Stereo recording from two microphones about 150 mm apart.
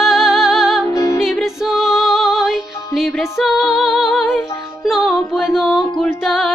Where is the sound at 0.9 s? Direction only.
25° left (ahead or behind).